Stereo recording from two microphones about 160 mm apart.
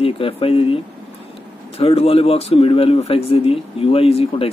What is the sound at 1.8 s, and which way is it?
A man's voice, 40° left (ahead or behind).